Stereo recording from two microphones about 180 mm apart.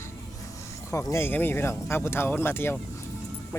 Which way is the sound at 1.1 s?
10° left (ahead or behind).